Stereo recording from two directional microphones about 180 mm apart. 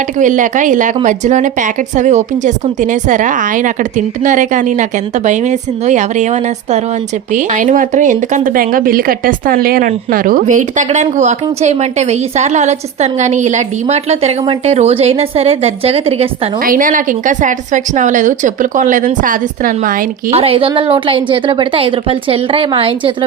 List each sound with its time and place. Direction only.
0.2 s a woman's voice: 45° right (ahead or behind)
16.6 s a woman's voice: 50° right (ahead or behind)
20.3 s a woman's voice: 30° right (ahead or behind)